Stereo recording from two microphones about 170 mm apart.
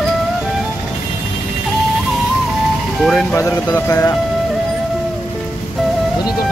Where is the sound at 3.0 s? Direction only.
5° left (ahead or behind).